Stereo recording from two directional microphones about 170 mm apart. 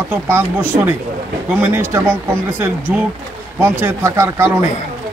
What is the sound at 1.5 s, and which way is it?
Speech, 10° right (ahead or behind).